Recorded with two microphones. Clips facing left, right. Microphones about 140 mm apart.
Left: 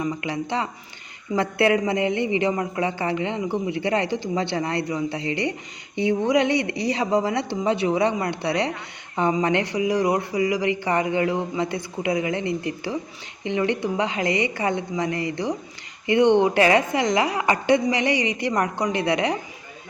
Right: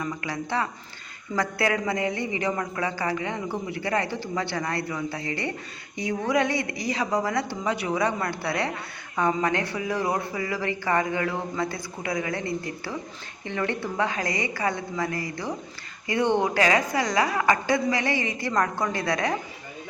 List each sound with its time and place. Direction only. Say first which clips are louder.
0.0 s speech: left 4 dB; 20° left (ahead or behind)